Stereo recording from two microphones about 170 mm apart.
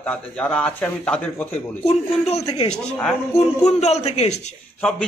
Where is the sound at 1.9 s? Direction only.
40° left (ahead or behind).